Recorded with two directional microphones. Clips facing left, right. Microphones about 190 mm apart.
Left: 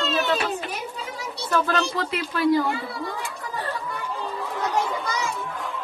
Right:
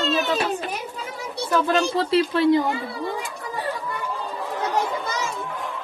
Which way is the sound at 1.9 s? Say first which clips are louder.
Right 7 dB; 30° right (ahead or behind).